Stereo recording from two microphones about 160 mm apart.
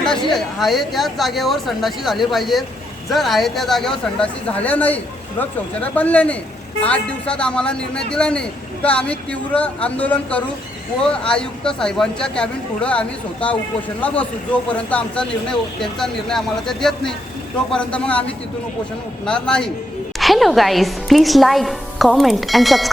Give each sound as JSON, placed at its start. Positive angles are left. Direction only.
{"t": 0.3, "sound": "a woman's voice", "side_deg": 0}